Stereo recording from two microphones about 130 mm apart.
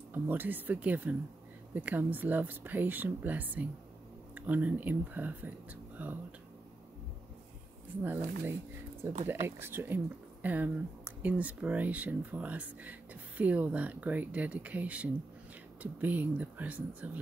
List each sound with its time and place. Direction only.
0.1 s speech: 15° right (ahead or behind)
8.0 s speech: 15° right (ahead or behind)